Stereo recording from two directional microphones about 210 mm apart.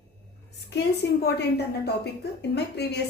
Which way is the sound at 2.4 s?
55° left (ahead or behind).